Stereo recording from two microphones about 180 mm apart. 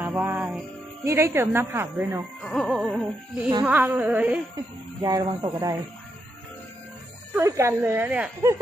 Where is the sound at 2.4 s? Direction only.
5° left (ahead or behind).